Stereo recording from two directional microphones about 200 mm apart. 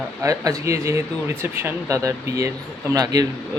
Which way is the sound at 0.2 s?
15° right (ahead or behind).